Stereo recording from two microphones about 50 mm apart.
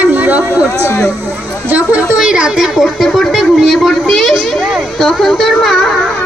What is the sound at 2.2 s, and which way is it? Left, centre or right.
Speech, centre.